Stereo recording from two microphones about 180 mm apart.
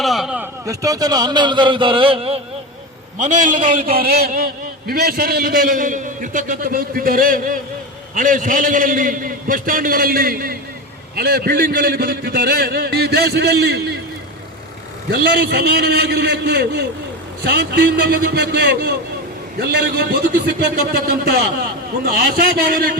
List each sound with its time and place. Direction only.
0.0 s a sound: centre (ahead or behind)
0.6 s speech: 20° right (ahead or behind)
3.2 s a man's voice: 45° right (ahead or behind); by 14.0 s 65° right (ahead or behind)
15.1 s a man's voice: 65° right (ahead or behind)